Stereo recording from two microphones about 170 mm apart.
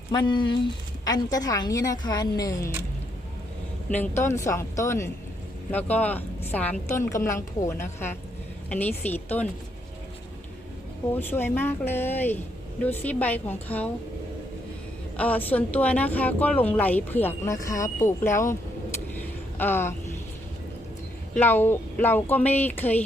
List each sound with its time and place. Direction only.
0.1 s a woman's voice: 25° left (ahead or behind)
3.9 s speech: 10° left (ahead or behind)
11.1 s speech: 10° left (ahead or behind)
15.1 s speech: 10° left (ahead or behind)
19.5 s speech: 10° left (ahead or behind)
21.3 s speech: 10° left (ahead or behind)